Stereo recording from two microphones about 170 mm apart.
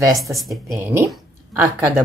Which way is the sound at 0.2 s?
Centre (ahead or behind).